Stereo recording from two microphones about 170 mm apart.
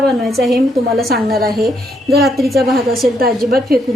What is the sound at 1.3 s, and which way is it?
Speech, 60° right (ahead or behind).